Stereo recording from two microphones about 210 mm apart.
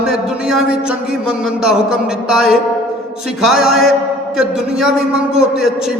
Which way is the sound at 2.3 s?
Centre (ahead or behind).